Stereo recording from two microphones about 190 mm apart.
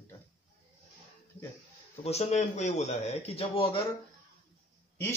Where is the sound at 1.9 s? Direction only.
35° left (ahead or behind).